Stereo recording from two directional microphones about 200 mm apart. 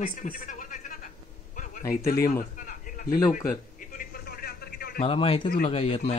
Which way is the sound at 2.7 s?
45° left (ahead or behind).